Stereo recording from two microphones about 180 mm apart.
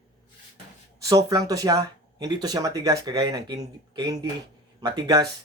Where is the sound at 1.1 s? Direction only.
20° right (ahead or behind).